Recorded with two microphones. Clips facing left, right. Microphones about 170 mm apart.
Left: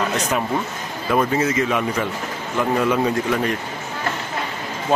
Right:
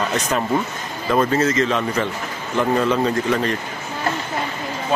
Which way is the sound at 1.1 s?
10° left (ahead or behind).